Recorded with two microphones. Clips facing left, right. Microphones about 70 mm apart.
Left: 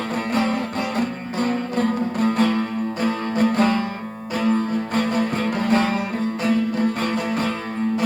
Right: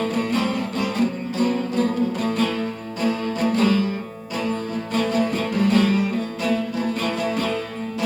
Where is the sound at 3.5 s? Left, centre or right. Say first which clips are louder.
Right 3 dB; left.